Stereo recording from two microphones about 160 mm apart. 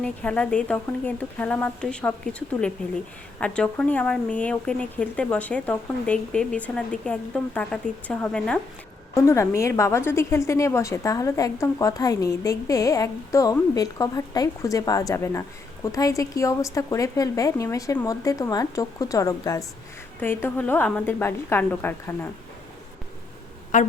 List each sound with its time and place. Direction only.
0.0 s speech: 5° left (ahead or behind)
9.1 s a woman's voice: 20° left (ahead or behind)
23.7 s a woman's voice: 50° left (ahead or behind)